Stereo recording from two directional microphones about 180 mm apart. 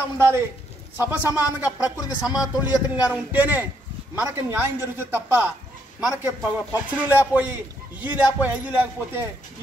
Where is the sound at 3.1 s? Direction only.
10° right (ahead or behind).